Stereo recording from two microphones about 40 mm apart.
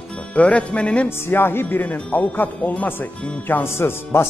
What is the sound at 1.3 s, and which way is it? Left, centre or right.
Speech, left.